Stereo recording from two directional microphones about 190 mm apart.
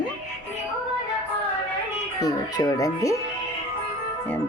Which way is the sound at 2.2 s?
20° left (ahead or behind).